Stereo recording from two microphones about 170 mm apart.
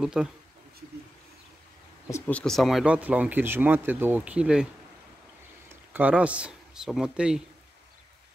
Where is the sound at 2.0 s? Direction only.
10° left (ahead or behind); by 4.6 s 5° right (ahead or behind).